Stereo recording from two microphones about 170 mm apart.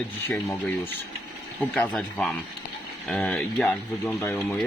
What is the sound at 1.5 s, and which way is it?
Speech, 10° left (ahead or behind).